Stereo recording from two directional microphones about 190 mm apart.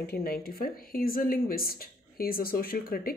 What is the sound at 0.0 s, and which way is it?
Speech, 55° left (ahead or behind).